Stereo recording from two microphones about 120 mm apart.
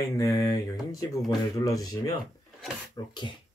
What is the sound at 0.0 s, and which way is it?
Speech, 25° left (ahead or behind).